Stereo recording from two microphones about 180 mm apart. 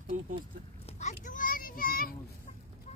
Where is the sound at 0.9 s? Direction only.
40° left (ahead or behind).